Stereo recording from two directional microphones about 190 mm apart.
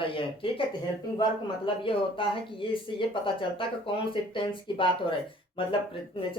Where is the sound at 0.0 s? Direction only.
30° left (ahead or behind).